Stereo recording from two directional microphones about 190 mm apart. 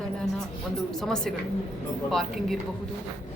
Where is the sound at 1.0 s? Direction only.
Centre (ahead or behind).